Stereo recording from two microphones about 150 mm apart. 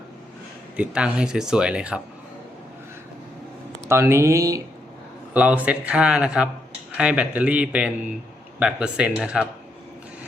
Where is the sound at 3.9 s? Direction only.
15° right (ahead or behind).